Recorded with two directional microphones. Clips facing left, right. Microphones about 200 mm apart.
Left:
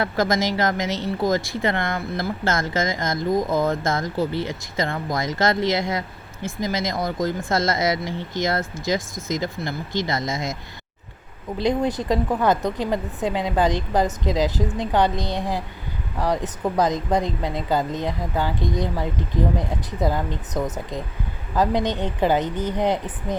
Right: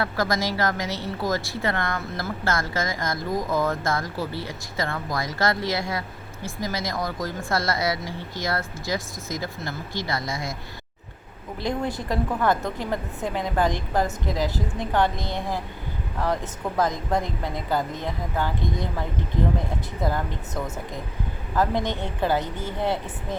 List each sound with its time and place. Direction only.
0.0 s speech: 20° left (ahead or behind)
11.6 s a woman's voice: 20° left (ahead or behind)